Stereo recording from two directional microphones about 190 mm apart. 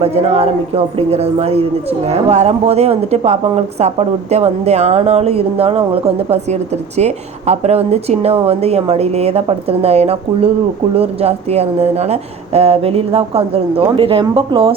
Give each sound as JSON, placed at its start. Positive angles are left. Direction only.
{"t": 0.0, "sound": "speech", "side_deg": -35}